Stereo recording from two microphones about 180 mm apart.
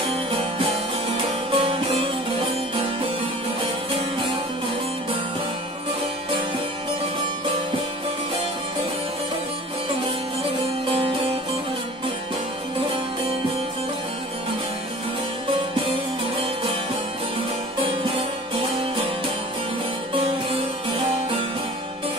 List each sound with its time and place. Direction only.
0.0 s music: 30° right (ahead or behind)
10.9 s music: 30° right (ahead or behind)